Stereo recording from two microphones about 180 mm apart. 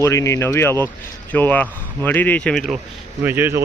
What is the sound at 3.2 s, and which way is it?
Speech, 10° right (ahead or behind).